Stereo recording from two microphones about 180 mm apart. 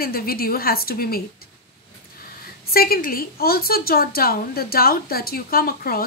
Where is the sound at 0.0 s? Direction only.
55° left (ahead or behind).